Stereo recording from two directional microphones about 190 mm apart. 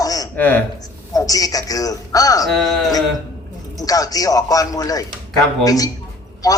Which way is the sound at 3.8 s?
20° left (ahead or behind).